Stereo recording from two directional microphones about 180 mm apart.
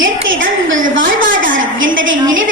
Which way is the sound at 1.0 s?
50° right (ahead or behind).